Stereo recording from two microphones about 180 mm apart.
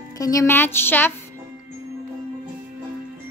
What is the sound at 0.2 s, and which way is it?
Speech, 20° left (ahead or behind).